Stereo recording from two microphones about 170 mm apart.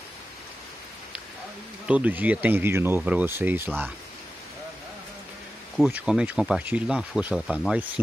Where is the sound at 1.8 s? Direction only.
10° right (ahead or behind).